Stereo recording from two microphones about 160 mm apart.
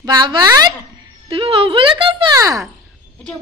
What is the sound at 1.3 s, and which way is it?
Speech, 35° right (ahead or behind).